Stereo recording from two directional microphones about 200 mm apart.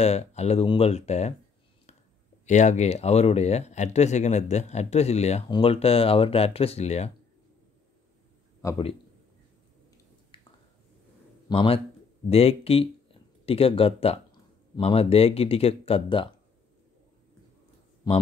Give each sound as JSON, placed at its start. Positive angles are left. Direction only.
{"t": 0.0, "sound": "speech", "side_deg": 30}
{"t": 2.4, "sound": "speech", "side_deg": 35}
{"t": 8.6, "sound": "speech", "side_deg": 25}
{"t": 10.3, "sound": "squish", "side_deg": 25}
{"t": 11.4, "sound": "speech", "side_deg": 25}
{"t": 18.1, "sound": "speech", "side_deg": 20}